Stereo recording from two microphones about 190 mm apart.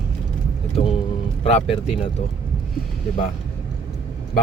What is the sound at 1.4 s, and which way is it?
Speech, 30° left (ahead or behind).